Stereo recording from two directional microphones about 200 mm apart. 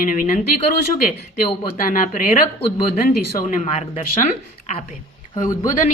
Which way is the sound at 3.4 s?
35° left (ahead or behind).